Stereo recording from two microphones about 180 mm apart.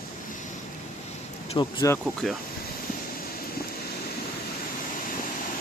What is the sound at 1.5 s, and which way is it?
Speech, 20° left (ahead or behind).